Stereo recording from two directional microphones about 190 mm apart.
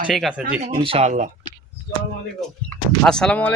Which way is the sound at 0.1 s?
Centre (ahead or behind).